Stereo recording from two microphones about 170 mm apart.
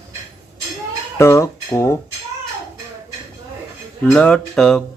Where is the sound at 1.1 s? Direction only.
15° left (ahead or behind).